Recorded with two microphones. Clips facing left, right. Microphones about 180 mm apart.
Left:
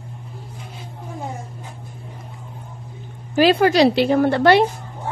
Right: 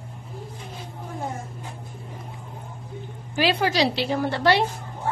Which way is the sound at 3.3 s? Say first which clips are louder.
Left 8 dB; 50° left (ahead or behind).